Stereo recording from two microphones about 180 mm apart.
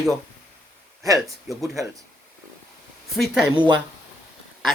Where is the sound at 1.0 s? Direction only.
20° right (ahead or behind).